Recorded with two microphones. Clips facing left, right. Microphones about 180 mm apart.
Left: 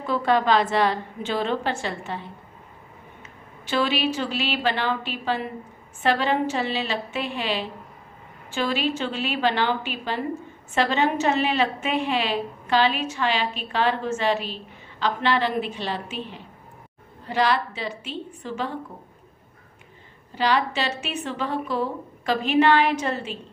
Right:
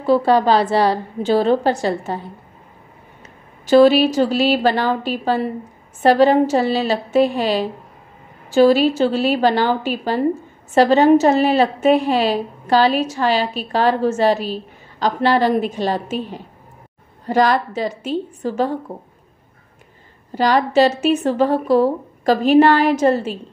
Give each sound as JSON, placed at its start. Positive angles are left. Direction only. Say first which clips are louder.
{"t": 0.0, "sound": "a woman's voice", "louder": "right 7 dB", "side_deg": -35}
{"t": 3.6, "sound": "a woman's voice", "louder": "right 13 dB", "side_deg": -40}
{"t": 20.3, "sound": "a woman's voice", "louder": "right 8 dB", "side_deg": -45}